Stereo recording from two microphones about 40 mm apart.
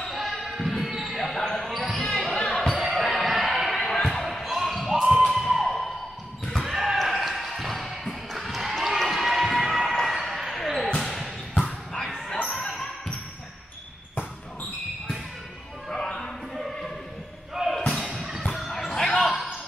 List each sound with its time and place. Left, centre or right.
0.1 s basketball bounce: centre
2.7 s basketball bounce: centre
3.0 s music: centre
3.7 s basketball bounce: centre
5.1 s a sound: centre
6.6 s basketball bounce: centre
10.5 s music: centre
11.0 s basketball bounce: centre
11.5 s basketball bounce: left
15.9 s a sound: centre
17.7 s basketball bounce: centre
18.1 s music: centre
18.7 s music: centre
19.1 s a sound: centre